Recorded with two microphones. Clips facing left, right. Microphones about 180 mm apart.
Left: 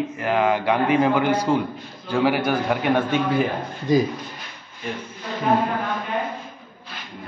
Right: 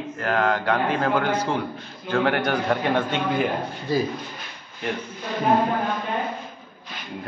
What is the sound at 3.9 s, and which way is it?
Speech, 15° left (ahead or behind).